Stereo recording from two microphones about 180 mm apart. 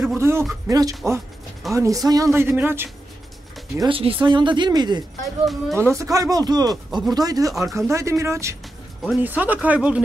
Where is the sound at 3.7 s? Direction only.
30° right (ahead or behind).